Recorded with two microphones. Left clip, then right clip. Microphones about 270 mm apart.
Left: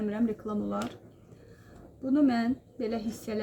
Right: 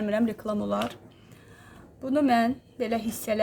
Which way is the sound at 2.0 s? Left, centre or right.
Right.